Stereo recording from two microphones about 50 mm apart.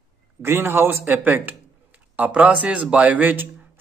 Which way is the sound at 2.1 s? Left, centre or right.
Right.